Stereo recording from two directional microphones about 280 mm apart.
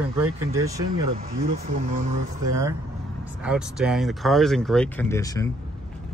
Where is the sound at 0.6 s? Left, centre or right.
Centre.